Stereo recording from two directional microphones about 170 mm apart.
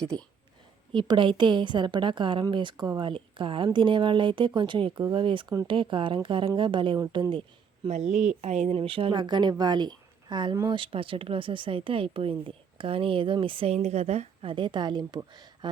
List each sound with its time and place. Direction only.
0.0 s a woman's voice: 5° left (ahead or behind)
0.9 s a woman's voice: 25° right (ahead or behind)
7.9 s speech: 40° right (ahead or behind); by 15.7 s 25° right (ahead or behind)